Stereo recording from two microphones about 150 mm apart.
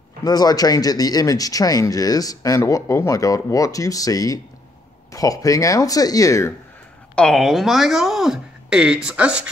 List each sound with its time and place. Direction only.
0.2 s speech: 25° left (ahead or behind)
7.2 s speech: centre (ahead or behind)